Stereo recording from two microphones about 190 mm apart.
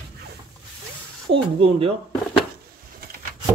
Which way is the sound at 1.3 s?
30° right (ahead or behind).